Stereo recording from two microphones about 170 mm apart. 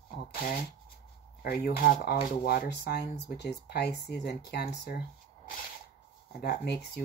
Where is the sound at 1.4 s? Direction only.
65° left (ahead or behind).